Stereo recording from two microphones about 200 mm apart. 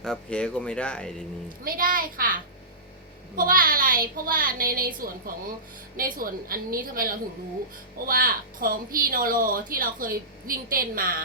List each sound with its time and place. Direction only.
0.0 s speech: 5° left (ahead or behind)
1.6 s speech: 45° right (ahead or behind)